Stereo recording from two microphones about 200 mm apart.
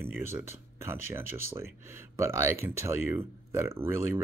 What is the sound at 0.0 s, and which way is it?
Speech, 10° right (ahead or behind).